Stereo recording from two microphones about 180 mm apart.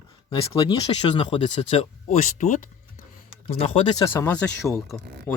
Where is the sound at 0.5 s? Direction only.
30° left (ahead or behind).